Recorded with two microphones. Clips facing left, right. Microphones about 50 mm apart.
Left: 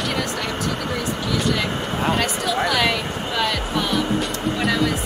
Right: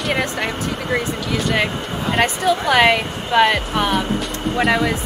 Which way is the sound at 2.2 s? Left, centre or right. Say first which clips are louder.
Right 4 dB; right.